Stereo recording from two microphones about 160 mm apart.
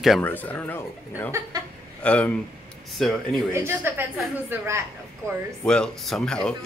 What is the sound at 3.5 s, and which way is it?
A woman's voice, 15° right (ahead or behind).